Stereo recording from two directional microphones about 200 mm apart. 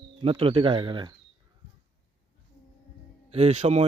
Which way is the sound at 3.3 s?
35° right (ahead or behind).